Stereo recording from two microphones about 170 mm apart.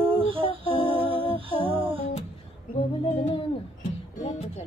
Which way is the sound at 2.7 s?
35° left (ahead or behind).